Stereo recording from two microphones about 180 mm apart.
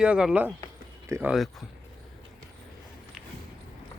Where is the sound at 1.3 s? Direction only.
Centre (ahead or behind).